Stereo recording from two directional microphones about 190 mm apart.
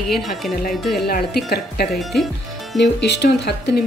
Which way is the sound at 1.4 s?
55° left (ahead or behind).